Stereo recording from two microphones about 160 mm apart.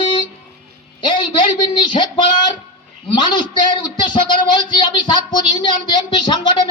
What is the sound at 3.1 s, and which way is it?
A man's voice, 30° left (ahead or behind).